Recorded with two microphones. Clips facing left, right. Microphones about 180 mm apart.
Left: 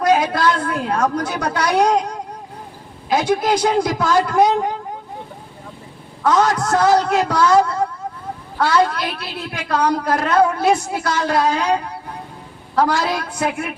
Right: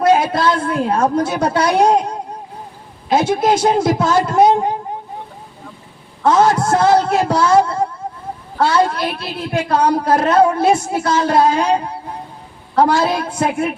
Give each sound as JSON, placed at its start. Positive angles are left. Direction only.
{"t": 0.0, "sound": "a woman's voice", "side_deg": -25}
{"t": 6.2, "sound": "a woman's voice", "side_deg": -25}